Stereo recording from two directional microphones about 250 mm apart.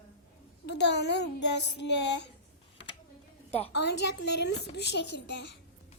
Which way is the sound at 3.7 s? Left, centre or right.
Left.